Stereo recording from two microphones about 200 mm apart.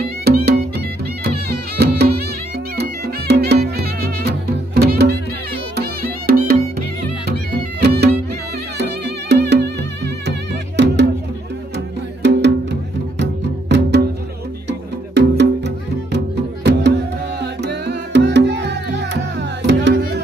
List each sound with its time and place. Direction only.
0.0 s music: 55° right (ahead or behind)
7.8 s music: 55° right (ahead or behind)